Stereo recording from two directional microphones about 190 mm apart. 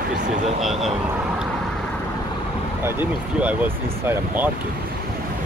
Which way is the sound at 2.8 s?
10° right (ahead or behind).